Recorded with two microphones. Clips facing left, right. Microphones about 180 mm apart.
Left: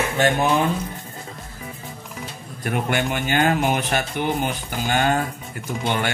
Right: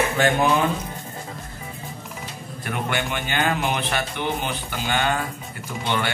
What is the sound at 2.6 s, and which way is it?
A man's voice, 45° left (ahead or behind).